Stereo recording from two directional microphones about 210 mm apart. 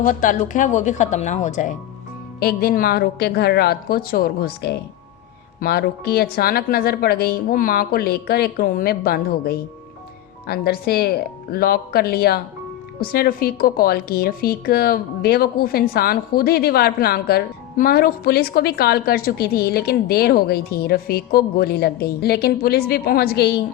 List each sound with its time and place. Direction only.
0.0 s a woman's voice: 40° left (ahead or behind)
2.4 s a woman's voice: 45° left (ahead or behind)